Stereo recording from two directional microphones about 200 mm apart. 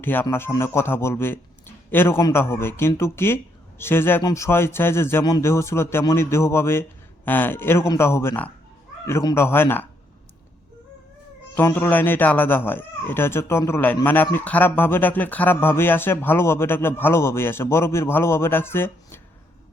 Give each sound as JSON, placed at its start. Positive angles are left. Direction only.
{"t": 0.0, "sound": "speech", "side_deg": 10}
{"t": 11.5, "sound": "speech", "side_deg": 10}